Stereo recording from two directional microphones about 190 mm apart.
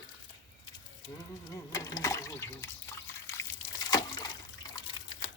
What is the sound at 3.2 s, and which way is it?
Liquid, 15° left (ahead or behind).